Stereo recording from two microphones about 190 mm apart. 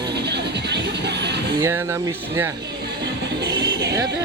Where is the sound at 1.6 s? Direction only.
15° right (ahead or behind).